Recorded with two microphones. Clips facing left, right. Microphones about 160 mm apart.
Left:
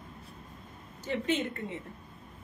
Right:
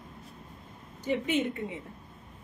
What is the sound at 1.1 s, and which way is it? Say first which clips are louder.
Speech: right 2 dB; 10° right (ahead or behind).